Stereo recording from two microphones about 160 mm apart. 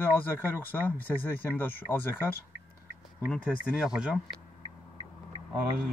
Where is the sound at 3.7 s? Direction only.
5° right (ahead or behind).